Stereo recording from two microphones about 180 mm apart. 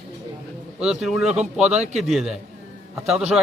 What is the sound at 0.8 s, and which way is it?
Speech, 5° right (ahead or behind).